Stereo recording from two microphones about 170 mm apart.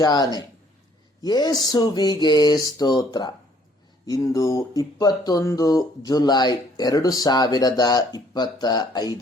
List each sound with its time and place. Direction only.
0.0 s speech: 20° left (ahead or behind)